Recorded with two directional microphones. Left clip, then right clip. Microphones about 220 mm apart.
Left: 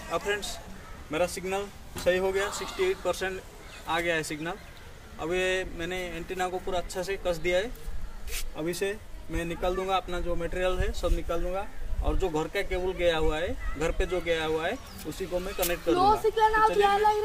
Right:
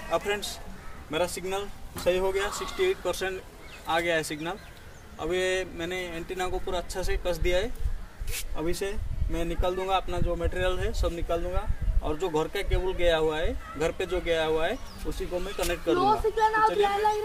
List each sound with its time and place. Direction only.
0.1 s speech: 15° right (ahead or behind)
16.0 s speech: 50° left (ahead or behind)